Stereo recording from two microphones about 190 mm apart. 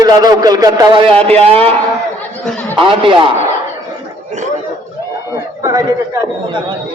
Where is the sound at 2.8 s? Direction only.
25° right (ahead or behind).